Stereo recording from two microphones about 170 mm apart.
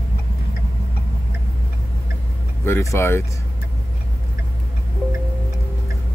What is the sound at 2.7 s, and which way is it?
Speech, 15° left (ahead or behind).